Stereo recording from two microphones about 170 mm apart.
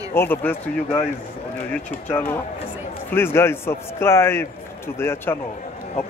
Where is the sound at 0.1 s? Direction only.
10° left (ahead or behind).